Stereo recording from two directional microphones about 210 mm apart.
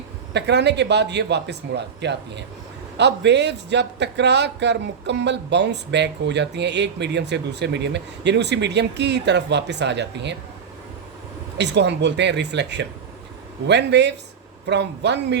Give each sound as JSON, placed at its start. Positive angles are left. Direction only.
{"t": 0.3, "sound": "speech", "side_deg": -55}
{"t": 11.5, "sound": "speech", "side_deg": -55}